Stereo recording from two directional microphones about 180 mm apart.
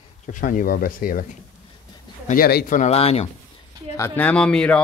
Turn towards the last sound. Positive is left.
turn(degrees=5)  # may be behind; listen again after turning